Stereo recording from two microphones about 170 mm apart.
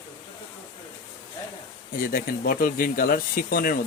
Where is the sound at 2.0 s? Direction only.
55° left (ahead or behind).